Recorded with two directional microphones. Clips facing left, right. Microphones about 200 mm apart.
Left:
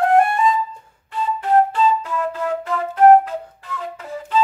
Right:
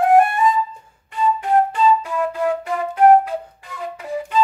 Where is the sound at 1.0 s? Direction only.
10° right (ahead or behind).